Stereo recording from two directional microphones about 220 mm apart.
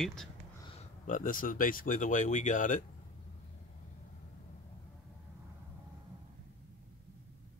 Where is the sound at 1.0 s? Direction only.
35° left (ahead or behind).